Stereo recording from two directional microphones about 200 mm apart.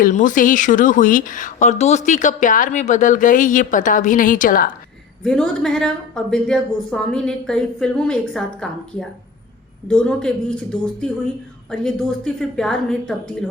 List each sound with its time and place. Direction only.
0.0 s speech: 40° left (ahead or behind)
5.2 s a woman's voice: 5° left (ahead or behind)